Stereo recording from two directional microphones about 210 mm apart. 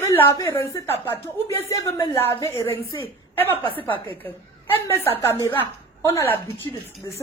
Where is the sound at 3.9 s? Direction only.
25° right (ahead or behind).